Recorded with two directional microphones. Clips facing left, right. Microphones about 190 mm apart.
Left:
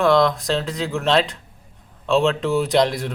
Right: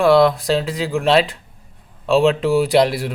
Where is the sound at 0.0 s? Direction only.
10° right (ahead or behind).